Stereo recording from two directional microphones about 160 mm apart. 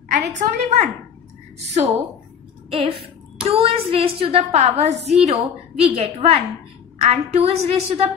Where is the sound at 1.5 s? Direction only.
45° right (ahead or behind).